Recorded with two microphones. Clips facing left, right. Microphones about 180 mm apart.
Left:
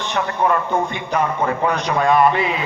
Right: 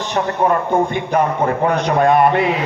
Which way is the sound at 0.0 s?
40° right (ahead or behind).